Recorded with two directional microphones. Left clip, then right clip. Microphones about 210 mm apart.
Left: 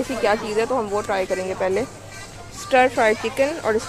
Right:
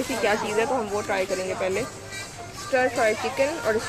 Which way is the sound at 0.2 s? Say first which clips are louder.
Left 3 dB; 15° left (ahead or behind).